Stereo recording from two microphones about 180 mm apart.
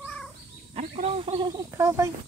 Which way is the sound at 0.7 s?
35° right (ahead or behind).